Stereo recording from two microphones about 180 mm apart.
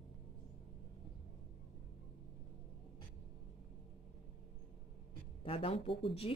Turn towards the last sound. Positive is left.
turn(degrees=30)  # may be behind; listen again after turning